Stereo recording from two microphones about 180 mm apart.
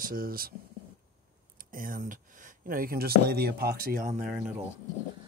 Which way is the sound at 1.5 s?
50° right (ahead or behind).